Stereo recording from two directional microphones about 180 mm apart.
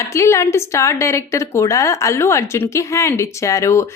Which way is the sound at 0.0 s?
15° left (ahead or behind).